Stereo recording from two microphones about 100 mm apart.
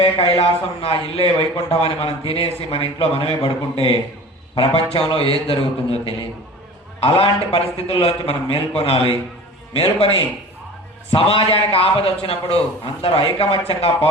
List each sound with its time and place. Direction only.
0.0 s speech: 70° left (ahead or behind)
4.5 s speech: 70° left (ahead or behind)